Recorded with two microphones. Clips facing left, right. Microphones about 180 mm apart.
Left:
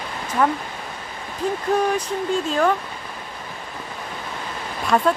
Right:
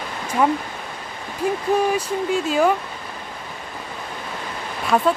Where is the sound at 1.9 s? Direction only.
5° right (ahead or behind).